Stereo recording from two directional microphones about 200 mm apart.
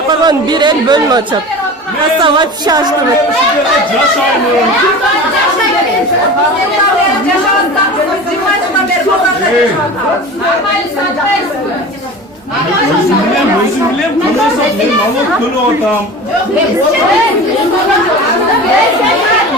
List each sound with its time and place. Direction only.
0.1 s speech: 20° right (ahead or behind)
2.2 s speech: 20° right (ahead or behind)